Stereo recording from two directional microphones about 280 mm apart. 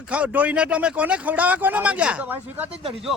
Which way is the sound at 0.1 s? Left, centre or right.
Centre.